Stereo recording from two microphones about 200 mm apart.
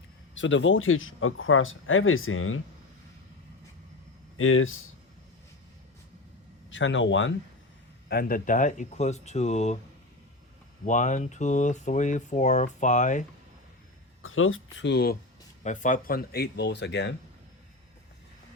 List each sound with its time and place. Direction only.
0.3 s speech: 70° left (ahead or behind); by 2.6 s 90° left
4.4 s speech: 90° left
6.7 s speech: 70° left (ahead or behind)
8.1 s speech: 45° left (ahead or behind)
10.8 s speech: 40° left (ahead or behind)
14.2 s speech: 90° left; by 15.2 s 55° left (ahead or behind)
15.6 s speech: 40° left (ahead or behind); by 17.2 s 60° left (ahead or behind)